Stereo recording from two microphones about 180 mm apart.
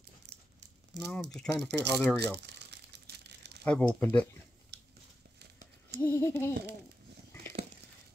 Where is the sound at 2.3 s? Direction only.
70° right (ahead or behind).